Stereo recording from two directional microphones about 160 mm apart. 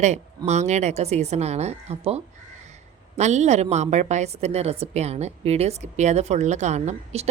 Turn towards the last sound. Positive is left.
turn(degrees=-45)  # may be behind; listen again after turning